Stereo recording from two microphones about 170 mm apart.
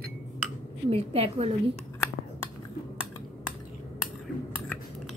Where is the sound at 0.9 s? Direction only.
35° right (ahead or behind).